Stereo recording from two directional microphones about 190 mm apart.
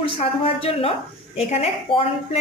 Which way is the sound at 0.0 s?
30° left (ahead or behind).